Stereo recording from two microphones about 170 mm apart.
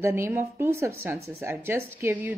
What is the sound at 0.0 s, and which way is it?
A woman's voice, 15° right (ahead or behind).